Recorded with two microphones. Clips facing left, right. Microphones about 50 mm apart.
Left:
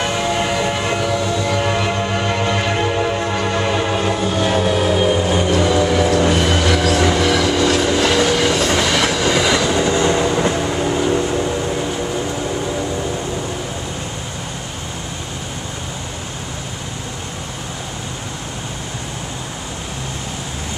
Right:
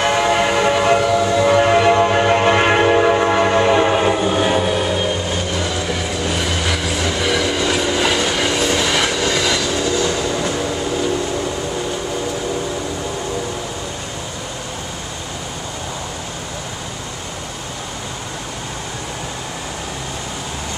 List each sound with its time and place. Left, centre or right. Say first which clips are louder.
0.0 s train: right 4 dB; right; by 6.0 s centre
6.6 s vehicle: left 5 dB; centre
7.2 s train: left 3 dB; centre; by 10.5 s left